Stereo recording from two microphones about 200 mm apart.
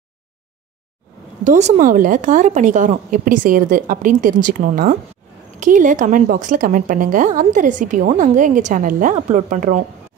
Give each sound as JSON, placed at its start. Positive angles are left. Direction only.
{"t": 1.4, "sound": "a woman's voice", "side_deg": -35}